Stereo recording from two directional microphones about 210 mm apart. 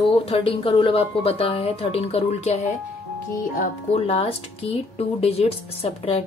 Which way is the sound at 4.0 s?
30° left (ahead or behind).